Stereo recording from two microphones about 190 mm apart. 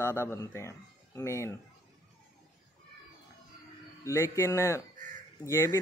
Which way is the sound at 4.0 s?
15° left (ahead or behind).